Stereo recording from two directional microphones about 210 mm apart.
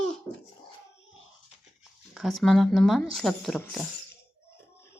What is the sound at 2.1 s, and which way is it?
Speech, centre (ahead or behind).